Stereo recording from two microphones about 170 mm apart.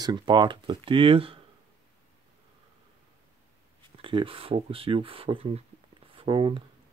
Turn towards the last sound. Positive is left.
turn(degrees=-30)  # may be behind; listen again after turning